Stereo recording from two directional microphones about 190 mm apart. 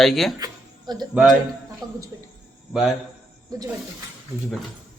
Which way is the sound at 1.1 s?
5° right (ahead or behind).